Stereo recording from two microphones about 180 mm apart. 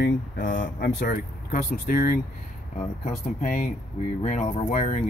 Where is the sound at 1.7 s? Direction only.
60° left (ahead or behind).